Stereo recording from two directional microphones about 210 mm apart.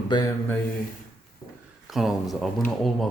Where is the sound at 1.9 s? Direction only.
Centre (ahead or behind).